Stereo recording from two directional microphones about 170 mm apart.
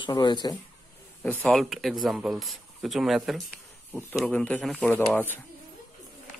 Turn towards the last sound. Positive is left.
turn(degrees=10)  # may be behind; listen again after turning